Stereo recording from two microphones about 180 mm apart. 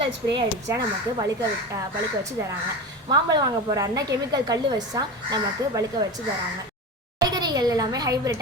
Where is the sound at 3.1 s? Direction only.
25° right (ahead or behind).